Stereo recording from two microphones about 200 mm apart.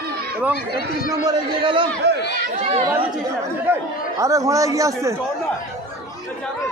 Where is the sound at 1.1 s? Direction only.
20° right (ahead or behind).